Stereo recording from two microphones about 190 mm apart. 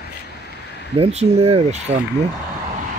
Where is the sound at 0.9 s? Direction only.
30° right (ahead or behind).